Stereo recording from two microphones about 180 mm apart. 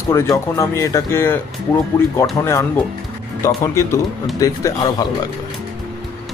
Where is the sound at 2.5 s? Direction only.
15° left (ahead or behind).